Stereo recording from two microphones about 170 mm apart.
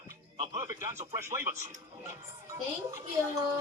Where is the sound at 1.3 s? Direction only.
15° right (ahead or behind).